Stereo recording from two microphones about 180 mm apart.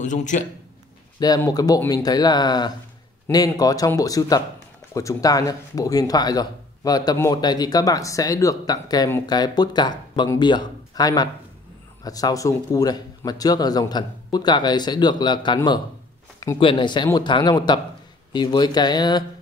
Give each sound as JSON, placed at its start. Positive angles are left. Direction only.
{"t": 0.0, "sound": "a man's voice", "side_deg": 45}
{"t": 1.2, "sound": "speech", "side_deg": 20}